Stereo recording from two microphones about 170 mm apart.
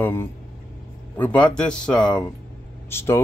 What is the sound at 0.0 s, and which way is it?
Speech, 15° left (ahead or behind).